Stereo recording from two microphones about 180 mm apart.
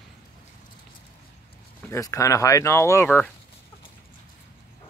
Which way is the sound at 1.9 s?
20° left (ahead or behind).